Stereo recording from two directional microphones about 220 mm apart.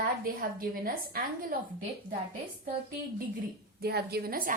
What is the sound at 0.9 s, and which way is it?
Speech, 40° right (ahead or behind).